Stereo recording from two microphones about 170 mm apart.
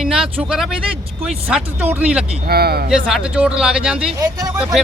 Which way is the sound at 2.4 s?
65° right (ahead or behind).